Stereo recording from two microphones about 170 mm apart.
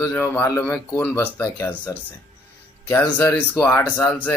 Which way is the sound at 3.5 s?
15° left (ahead or behind).